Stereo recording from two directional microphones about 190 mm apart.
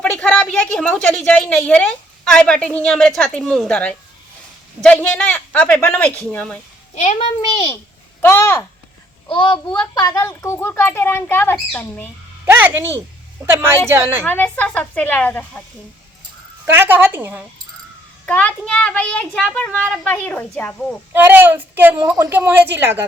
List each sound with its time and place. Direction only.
0.0 s a woman's voice: 5° left (ahead or behind)
6.9 s a child's voice: 35° left (ahead or behind)
8.2 s speech: 10° left (ahead or behind)
9.3 s a child's voice: 25° left (ahead or behind); by 12.0 s 5° left (ahead or behind)
12.5 s speech: 10° right (ahead or behind)
14.3 s speech: 10° left (ahead or behind)
16.7 s speech: 10° right (ahead or behind)
18.3 s a woman's voice: 5° left (ahead or behind)
21.1 s speech: 10° right (ahead or behind)